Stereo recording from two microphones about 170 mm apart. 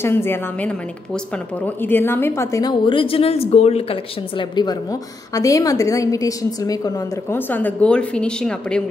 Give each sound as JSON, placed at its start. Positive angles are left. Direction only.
{"t": 0.0, "sound": "a woman's voice", "side_deg": 15}